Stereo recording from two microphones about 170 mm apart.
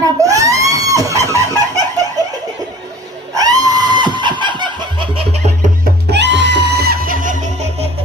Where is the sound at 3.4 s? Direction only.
20° right (ahead or behind); by 5.7 s 40° right (ahead or behind).